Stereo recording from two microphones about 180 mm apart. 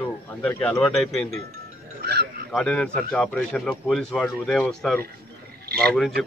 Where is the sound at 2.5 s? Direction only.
5° left (ahead or behind).